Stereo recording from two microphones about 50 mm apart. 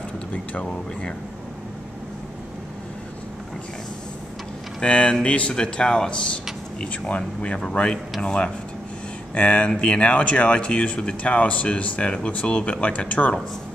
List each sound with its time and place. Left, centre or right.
4.8 s speech: left